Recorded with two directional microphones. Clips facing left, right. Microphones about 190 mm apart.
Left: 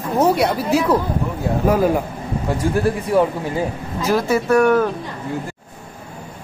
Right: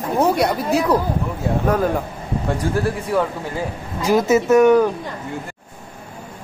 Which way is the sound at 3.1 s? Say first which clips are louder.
Left 4 dB; 20° left (ahead or behind).